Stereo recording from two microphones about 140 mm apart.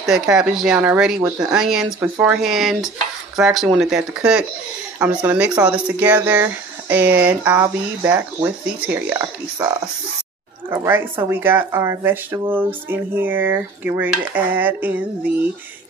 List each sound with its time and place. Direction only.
0.0 s speech: 5° right (ahead or behind); by 8.5 s 20° right (ahead or behind)
8.6 s speech: 10° right (ahead or behind)